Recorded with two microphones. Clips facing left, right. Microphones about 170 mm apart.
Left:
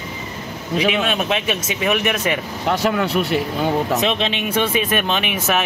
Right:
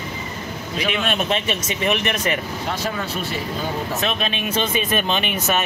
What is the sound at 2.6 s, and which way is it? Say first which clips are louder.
Speech: left 7 dB; 65° left (ahead or behind).